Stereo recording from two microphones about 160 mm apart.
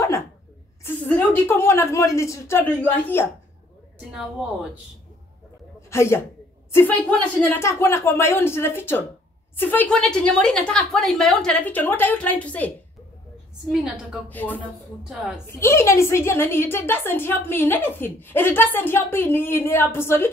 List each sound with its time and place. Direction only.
1.0 s a woman's voice: 10° left (ahead or behind)
5.9 s a man's voice: 15° left (ahead or behind)
13.7 s a woman's voice: 5° right (ahead or behind)
14.3 s a woman's voice: 10° left (ahead or behind)
15.0 s a woman's voice: 5° right (ahead or behind)
15.4 s a woman's voice: 15° left (ahead or behind)